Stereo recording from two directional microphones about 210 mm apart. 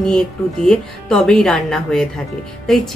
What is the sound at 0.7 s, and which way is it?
Speech, 5° left (ahead or behind).